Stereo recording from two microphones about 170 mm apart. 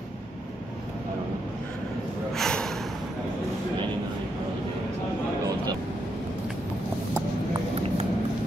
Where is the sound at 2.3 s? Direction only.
5° left (ahead or behind).